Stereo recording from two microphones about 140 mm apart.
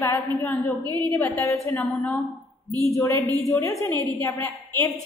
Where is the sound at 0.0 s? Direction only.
20° left (ahead or behind).